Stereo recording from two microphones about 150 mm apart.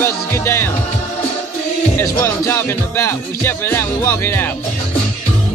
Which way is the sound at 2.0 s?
20° left (ahead or behind).